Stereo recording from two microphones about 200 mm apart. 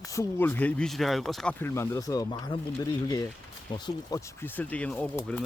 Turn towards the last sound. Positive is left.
turn(degrees=5)  # may be behind; listen again after turning